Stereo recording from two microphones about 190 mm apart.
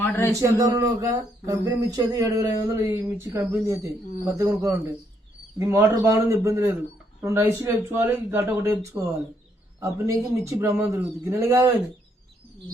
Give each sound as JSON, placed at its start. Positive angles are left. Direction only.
{"t": 0.0, "sound": "a man's voice", "side_deg": 10}
{"t": 0.3, "sound": "speech", "side_deg": -15}